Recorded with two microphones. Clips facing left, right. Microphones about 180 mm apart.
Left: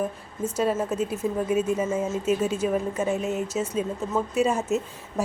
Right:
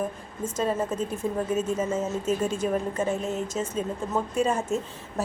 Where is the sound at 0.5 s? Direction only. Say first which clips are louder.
Left 2 dB; 10° left (ahead or behind).